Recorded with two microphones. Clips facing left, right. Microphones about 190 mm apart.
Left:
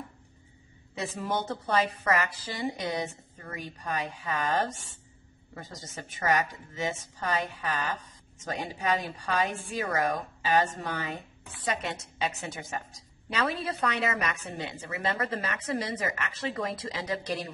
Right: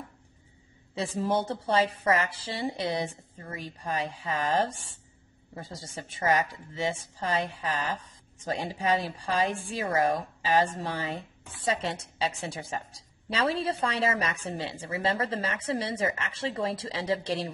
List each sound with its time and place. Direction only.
0.9 s a woman's voice: 30° right (ahead or behind)